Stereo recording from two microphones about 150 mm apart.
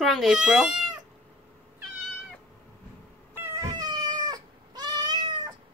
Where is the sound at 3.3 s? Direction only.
15° right (ahead or behind).